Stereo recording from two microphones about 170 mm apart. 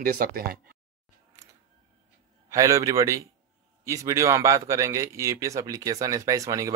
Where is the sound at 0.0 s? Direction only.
60° right (ahead or behind).